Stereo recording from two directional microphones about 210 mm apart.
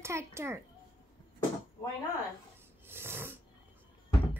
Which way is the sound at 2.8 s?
10° right (ahead or behind).